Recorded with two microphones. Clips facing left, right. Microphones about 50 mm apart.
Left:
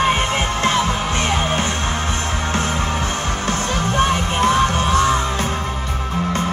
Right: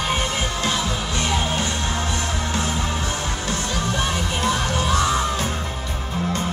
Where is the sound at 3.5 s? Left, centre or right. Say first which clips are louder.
Left 4 dB; left.